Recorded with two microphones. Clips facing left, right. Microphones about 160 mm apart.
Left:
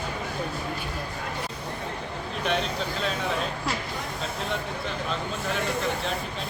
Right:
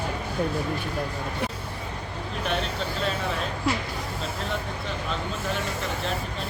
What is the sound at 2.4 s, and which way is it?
Speech, centre (ahead or behind).